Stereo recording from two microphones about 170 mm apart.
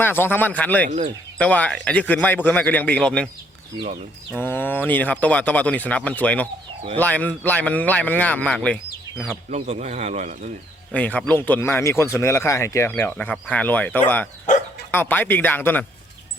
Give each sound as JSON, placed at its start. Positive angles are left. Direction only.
{"t": 0.0, "sound": "speech", "side_deg": 15}
{"t": 0.9, "sound": "speech", "side_deg": -40}
{"t": 1.4, "sound": "speech", "side_deg": 10}
{"t": 4.3, "sound": "speech", "side_deg": 10}
{"t": 9.5, "sound": "speech", "side_deg": -40}
{"t": 10.9, "sound": "speech", "side_deg": 10}